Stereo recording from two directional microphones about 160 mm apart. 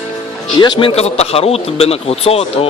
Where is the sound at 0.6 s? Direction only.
30° left (ahead or behind).